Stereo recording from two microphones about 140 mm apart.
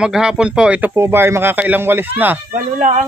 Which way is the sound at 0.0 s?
5° right (ahead or behind).